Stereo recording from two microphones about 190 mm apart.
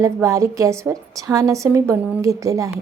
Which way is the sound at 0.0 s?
15° right (ahead or behind).